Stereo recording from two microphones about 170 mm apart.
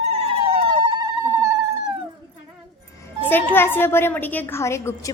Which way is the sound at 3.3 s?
10° left (ahead or behind).